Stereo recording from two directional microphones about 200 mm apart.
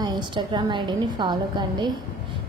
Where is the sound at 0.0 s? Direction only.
20° right (ahead or behind).